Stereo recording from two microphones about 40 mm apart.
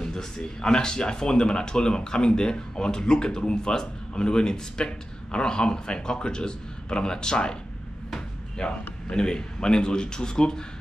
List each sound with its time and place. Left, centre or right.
0.0 s speech: centre
8.5 s speech: left